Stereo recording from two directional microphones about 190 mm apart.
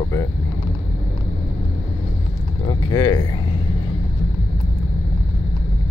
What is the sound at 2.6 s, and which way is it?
Speech, 25° left (ahead or behind).